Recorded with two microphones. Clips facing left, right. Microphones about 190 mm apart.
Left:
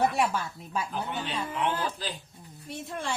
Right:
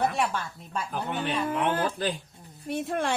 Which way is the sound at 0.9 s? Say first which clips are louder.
Right 3 dB; 55° right (ahead or behind).